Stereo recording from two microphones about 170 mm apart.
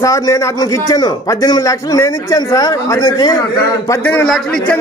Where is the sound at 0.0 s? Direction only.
20° left (ahead or behind).